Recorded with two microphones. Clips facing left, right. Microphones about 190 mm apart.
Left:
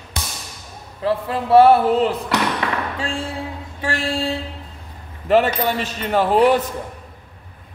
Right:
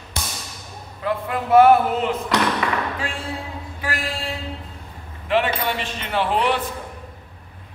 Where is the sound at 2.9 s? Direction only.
30° left (ahead or behind).